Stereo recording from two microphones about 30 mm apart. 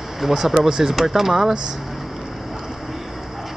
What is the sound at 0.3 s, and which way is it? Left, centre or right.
Speech, centre.